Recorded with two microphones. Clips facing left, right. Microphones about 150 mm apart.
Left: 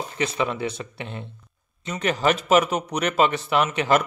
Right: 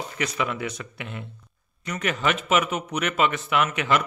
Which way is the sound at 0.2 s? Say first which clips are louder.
Left 3 dB; 30° left (ahead or behind).